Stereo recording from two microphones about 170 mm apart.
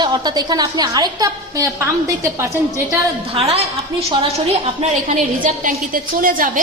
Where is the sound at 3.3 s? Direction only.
35° right (ahead or behind); by 6.5 s 55° right (ahead or behind).